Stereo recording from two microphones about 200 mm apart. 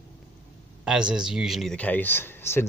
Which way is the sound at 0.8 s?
5° right (ahead or behind).